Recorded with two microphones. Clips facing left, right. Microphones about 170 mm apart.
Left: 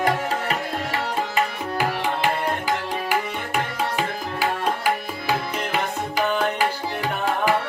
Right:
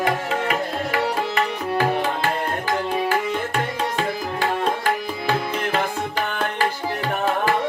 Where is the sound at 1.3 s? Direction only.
10° left (ahead or behind).